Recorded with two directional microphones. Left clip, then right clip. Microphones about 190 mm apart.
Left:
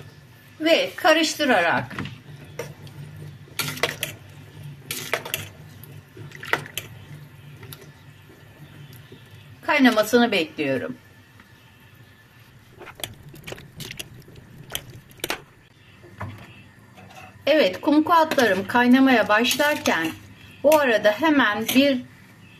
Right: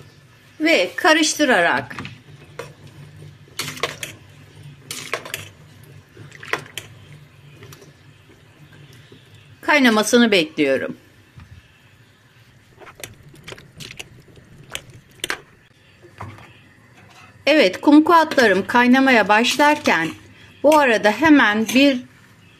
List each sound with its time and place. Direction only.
0.6 s a woman's voice: 40° right (ahead or behind)
9.7 s a woman's voice: 45° right (ahead or behind)
17.4 s speech: 35° right (ahead or behind)